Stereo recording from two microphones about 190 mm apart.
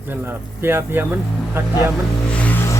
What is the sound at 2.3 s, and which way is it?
Music, 5° left (ahead or behind).